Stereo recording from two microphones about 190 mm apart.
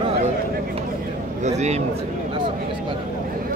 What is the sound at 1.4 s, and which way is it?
Speech, 35° right (ahead or behind).